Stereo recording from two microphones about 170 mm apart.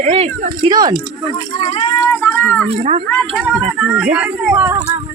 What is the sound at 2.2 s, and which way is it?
Speech, 10° left (ahead or behind).